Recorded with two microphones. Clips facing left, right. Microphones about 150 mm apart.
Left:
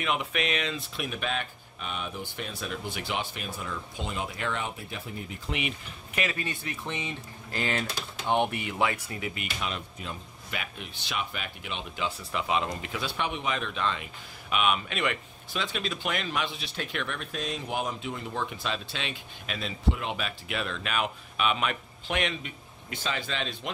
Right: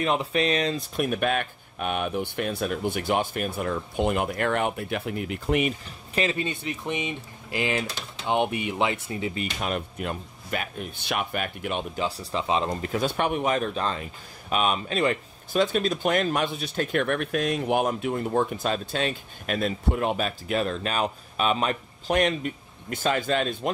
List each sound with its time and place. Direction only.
0.0 s speech: 35° right (ahead or behind); by 5.4 s 70° right (ahead or behind)
5.5 s speech: 45° right (ahead or behind)
6.1 s speech: 25° right (ahead or behind)
9.7 s speech: 55° right (ahead or behind)